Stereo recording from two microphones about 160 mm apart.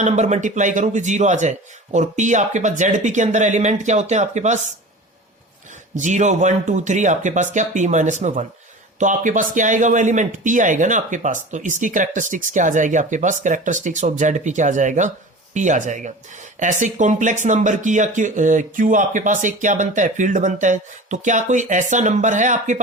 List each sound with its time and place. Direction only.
0.0 s speech: 45° right (ahead or behind)
6.0 s speech: 50° right (ahead or behind)